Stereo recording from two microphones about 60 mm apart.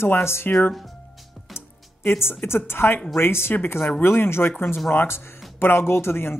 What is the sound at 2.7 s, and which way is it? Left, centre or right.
Speech, left.